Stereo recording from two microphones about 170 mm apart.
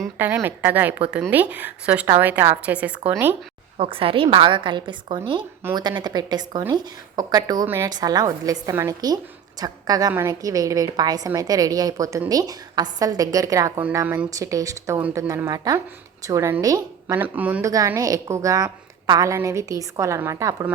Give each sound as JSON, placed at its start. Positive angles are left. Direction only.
{"t": 0.2, "sound": "a woman's voice", "side_deg": -10}
{"t": 3.8, "sound": "a woman's voice", "side_deg": -30}
{"t": 17.2, "sound": "a woman's voice", "side_deg": -10}
{"t": 17.7, "sound": "a woman's voice", "side_deg": -20}